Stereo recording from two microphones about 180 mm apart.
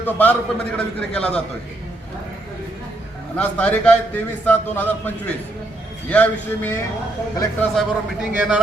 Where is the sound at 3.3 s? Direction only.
10° left (ahead or behind).